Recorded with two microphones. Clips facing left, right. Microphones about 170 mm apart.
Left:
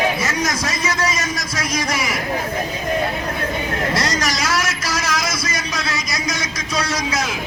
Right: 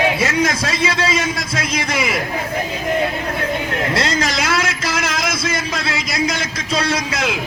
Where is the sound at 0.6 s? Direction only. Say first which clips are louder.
Right 2 dB; 30° right (ahead or behind).